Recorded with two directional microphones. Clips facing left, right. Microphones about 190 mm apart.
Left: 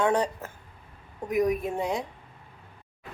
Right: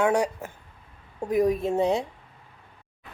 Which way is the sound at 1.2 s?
30° right (ahead or behind).